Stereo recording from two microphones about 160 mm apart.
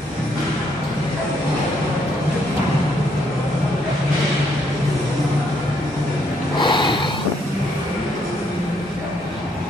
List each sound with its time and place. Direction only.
6.6 s snort: 30° left (ahead or behind)